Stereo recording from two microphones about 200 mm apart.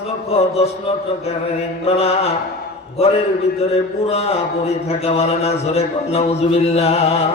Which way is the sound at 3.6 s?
30° left (ahead or behind).